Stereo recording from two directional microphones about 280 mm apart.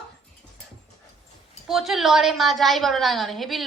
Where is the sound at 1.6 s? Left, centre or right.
Centre.